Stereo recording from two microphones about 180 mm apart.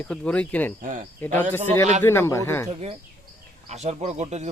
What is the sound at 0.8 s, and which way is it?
Speech, 45° right (ahead or behind).